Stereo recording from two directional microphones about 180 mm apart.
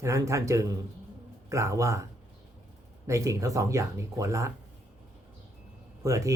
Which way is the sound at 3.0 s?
15° right (ahead or behind).